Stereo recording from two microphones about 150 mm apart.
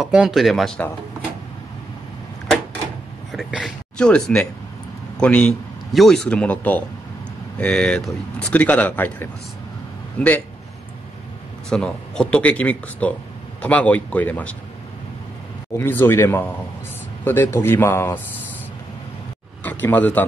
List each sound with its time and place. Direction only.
0.0 s speech: 5° right (ahead or behind)
3.3 s a man's voice: centre (ahead or behind)
11.7 s speech: 5° left (ahead or behind)
15.8 s speech: 15° left (ahead or behind)
19.6 s speech: 10° left (ahead or behind)